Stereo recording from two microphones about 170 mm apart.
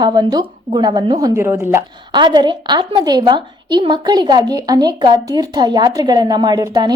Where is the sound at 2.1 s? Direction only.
25° right (ahead or behind).